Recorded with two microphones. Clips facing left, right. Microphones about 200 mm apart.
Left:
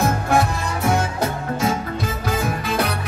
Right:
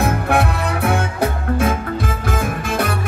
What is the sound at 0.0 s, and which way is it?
Music, 60° right (ahead or behind).